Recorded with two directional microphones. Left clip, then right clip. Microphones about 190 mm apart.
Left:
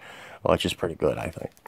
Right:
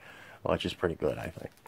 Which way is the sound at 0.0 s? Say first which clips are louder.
Left 8 dB; 45° left (ahead or behind).